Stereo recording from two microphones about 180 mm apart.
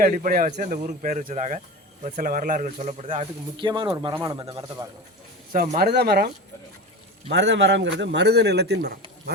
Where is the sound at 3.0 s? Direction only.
30° right (ahead or behind).